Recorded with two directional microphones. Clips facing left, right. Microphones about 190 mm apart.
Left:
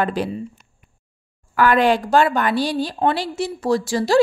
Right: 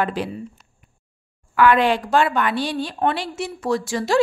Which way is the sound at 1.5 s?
40° left (ahead or behind).